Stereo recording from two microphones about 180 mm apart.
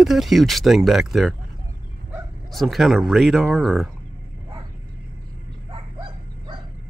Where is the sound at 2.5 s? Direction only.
Centre (ahead or behind).